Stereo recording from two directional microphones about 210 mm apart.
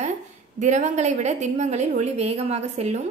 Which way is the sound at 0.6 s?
35° right (ahead or behind).